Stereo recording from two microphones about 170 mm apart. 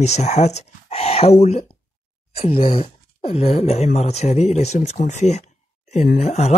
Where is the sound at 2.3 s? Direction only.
35° left (ahead or behind).